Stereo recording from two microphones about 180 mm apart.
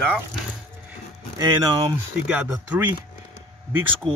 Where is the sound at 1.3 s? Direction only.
20° right (ahead or behind).